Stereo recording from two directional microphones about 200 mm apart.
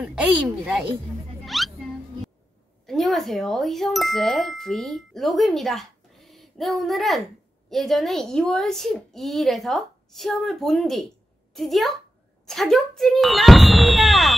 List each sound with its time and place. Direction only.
0.0 s a child's voice: 5° right (ahead or behind)
1.4 s music: centre (ahead or behind)
2.9 s a child's voice: centre (ahead or behind)